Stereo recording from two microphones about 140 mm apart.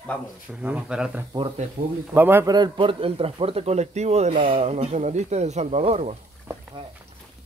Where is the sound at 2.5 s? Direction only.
35° right (ahead or behind); by 6.1 s 50° right (ahead or behind).